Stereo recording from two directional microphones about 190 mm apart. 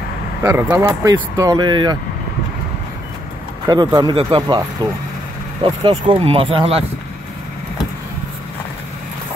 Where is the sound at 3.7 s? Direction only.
20° right (ahead or behind).